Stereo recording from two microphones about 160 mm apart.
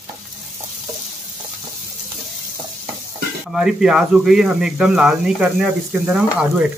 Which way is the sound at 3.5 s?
5° right (ahead or behind).